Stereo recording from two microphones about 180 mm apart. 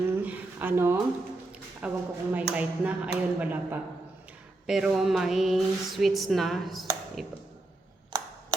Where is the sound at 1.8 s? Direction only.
5° right (ahead or behind).